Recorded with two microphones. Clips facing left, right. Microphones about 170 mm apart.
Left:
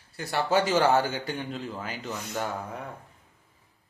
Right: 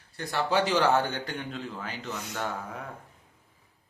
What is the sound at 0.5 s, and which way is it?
Speech, 45° left (ahead or behind).